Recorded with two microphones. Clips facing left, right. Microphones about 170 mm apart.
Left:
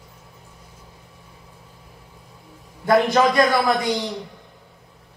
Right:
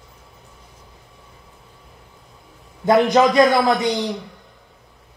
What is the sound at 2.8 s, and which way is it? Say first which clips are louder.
Mantra: right 2 dB; 20° right (ahead or behind).